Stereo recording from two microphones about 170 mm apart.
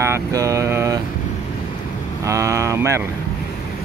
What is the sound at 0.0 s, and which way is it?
Vehicle, 15° right (ahead or behind).